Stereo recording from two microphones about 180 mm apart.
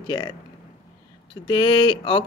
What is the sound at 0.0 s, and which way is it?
Speech, 25° left (ahead or behind).